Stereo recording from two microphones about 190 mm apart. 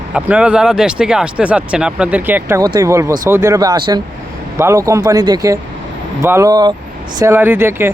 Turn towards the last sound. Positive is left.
turn(degrees=-10)  # may be behind; listen again after turning